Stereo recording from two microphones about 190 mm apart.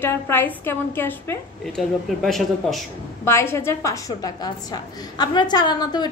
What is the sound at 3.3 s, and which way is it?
A woman's voice, 15° left (ahead or behind).